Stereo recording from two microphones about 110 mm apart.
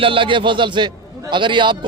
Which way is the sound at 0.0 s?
50° right (ahead or behind).